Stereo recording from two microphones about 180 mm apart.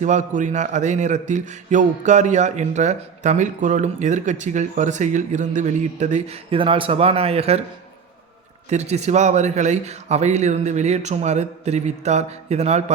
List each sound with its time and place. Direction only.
0.0 s a man's voice: 45° right (ahead or behind)
8.7 s a man's voice: 40° right (ahead or behind)